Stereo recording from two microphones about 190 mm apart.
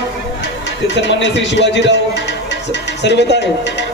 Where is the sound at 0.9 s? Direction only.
70° left (ahead or behind).